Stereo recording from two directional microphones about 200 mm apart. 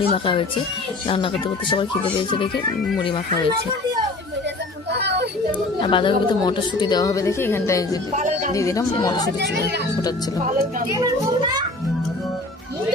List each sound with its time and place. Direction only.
0.1 s a woman's voice: 25° left (ahead or behind)
4.9 s a sound: 55° right (ahead or behind)
5.8 s a woman's voice: 25° left (ahead or behind)
8.2 s a sound: 40° right (ahead or behind)
8.5 s speech: 15° left (ahead or behind)
9.4 s speech: 55° right (ahead or behind)
10.9 s a child's voice: 20° right (ahead or behind)